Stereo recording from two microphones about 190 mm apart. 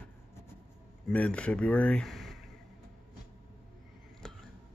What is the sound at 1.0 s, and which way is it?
Speech, 5° left (ahead or behind).